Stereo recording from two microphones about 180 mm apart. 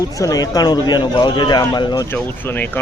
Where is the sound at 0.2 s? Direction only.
20° left (ahead or behind).